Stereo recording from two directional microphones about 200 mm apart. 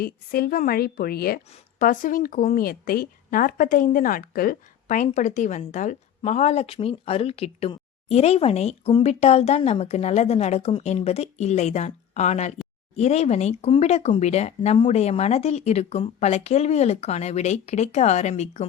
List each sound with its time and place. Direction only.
0.0 s a woman's voice: 50° left (ahead or behind)